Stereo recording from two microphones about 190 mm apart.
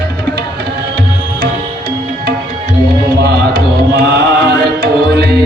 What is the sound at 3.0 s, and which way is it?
Music, 55° right (ahead or behind).